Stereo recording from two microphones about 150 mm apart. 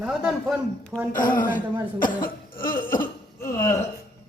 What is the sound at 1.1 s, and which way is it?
Speech, 65° left (ahead or behind).